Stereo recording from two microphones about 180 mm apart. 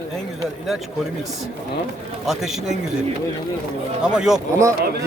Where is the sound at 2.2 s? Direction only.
Centre (ahead or behind).